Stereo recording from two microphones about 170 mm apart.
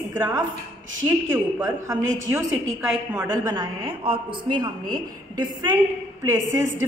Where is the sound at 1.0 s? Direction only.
10° right (ahead or behind).